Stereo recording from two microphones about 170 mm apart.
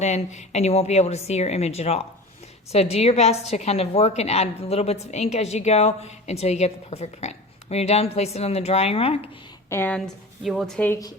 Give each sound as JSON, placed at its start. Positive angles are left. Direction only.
{"t": 0.0, "sound": "a woman's voice", "side_deg": 40}
{"t": 9.6, "sound": "speech", "side_deg": 15}
{"t": 10.4, "sound": "a woman's voice", "side_deg": 0}